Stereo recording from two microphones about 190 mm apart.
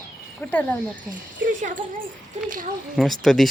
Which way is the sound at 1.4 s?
45° right (ahead or behind).